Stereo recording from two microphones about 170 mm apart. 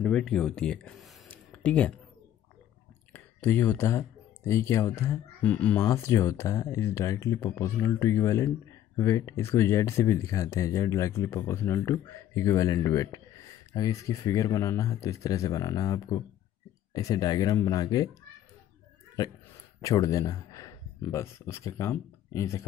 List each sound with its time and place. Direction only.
0.0 s speech: 5° left (ahead or behind)
3.1 s speech: 10° left (ahead or behind)
19.8 s speech: 20° left (ahead or behind)